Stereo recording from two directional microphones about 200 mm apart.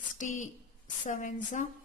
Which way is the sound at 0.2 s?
40° left (ahead or behind).